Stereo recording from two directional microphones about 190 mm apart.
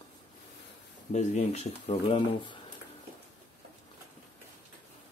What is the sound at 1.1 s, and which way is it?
Speech, 35° left (ahead or behind).